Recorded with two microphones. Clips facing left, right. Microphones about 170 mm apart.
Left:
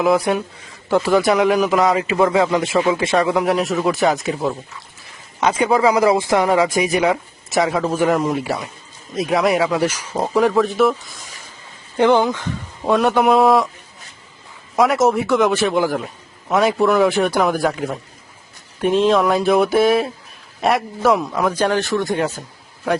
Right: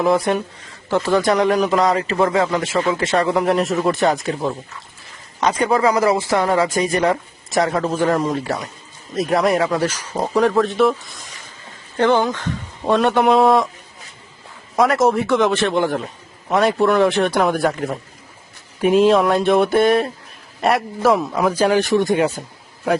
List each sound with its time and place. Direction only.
0.0 s a man's voice: centre (ahead or behind)
3.3 s a man's voice: centre (ahead or behind)
11.9 s a man's voice: 15° left (ahead or behind)
14.8 s a man's voice: centre (ahead or behind); by 22.4 s 15° right (ahead or behind)